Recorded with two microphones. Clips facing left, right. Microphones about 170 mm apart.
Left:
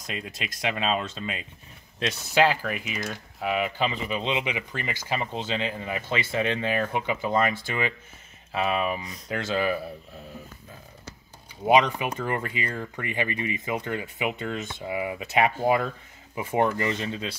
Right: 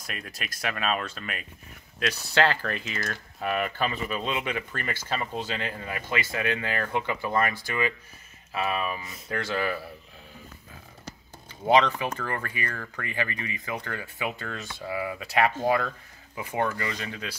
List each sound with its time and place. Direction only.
0.0 s speech: 20° left (ahead or behind)
2.4 s speech: 10° left (ahead or behind)
11.6 s speech: 15° left (ahead or behind)